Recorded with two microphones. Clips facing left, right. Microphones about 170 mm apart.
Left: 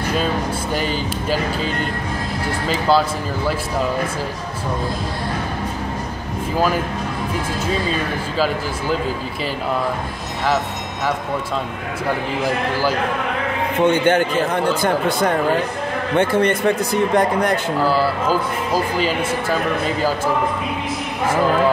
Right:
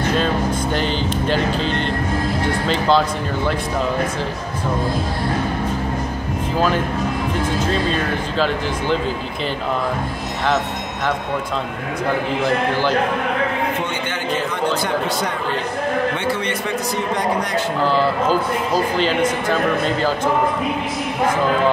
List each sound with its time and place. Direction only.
0.7 s speech: 5° left (ahead or behind)
13.8 s a man's voice: 50° left (ahead or behind)
17.8 s speech: 5° left (ahead or behind)